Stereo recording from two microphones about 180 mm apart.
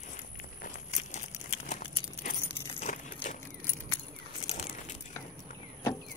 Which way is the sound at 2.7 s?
40° left (ahead or behind).